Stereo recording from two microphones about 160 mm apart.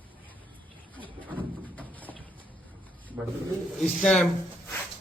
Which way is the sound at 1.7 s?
10° left (ahead or behind).